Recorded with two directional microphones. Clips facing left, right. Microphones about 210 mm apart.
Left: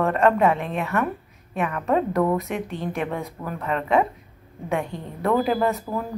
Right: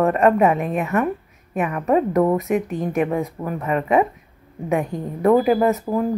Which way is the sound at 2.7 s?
15° right (ahead or behind).